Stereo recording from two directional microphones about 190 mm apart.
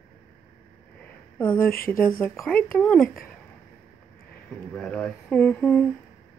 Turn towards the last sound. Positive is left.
turn(degrees=5)  # may be behind; listen again after turning